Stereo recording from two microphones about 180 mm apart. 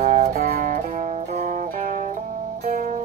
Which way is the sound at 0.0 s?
40° right (ahead or behind).